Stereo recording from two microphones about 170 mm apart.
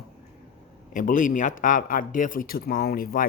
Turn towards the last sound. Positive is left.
turn(degrees=60)  # may be behind; listen again after turning